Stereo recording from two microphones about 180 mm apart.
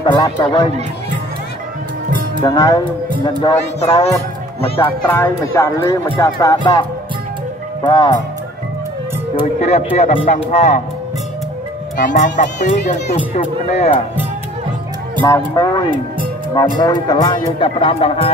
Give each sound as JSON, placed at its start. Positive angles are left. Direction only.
{"t": 0.0, "sound": "speech", "side_deg": 25}
{"t": 2.4, "sound": "speech", "side_deg": 20}
{"t": 4.6, "sound": "a child's voice", "side_deg": 30}
{"t": 4.8, "sound": "speech", "side_deg": 10}
{"t": 9.6, "sound": "speech", "side_deg": 35}
{"t": 12.0, "sound": "speech", "side_deg": 45}
{"t": 15.2, "sound": "speech", "side_deg": 20}